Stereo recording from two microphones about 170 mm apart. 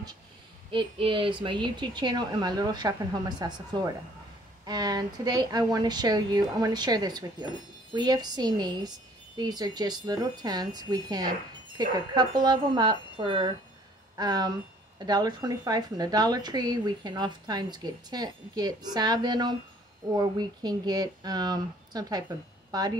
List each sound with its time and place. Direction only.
0.7 s speech: 30° right (ahead or behind)